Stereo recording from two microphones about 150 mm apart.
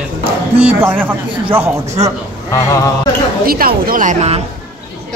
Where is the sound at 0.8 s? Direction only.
15° right (ahead or behind).